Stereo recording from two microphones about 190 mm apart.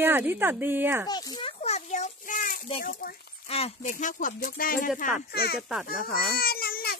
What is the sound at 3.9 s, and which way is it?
Speech, 45° left (ahead or behind).